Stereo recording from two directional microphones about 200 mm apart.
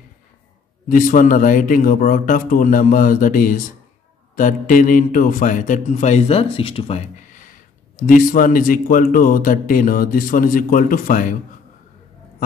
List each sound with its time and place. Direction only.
0.8 s a man's voice: 40° left (ahead or behind)